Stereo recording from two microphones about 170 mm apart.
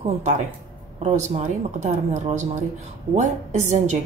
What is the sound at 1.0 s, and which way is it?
A woman's voice, 40° right (ahead or behind).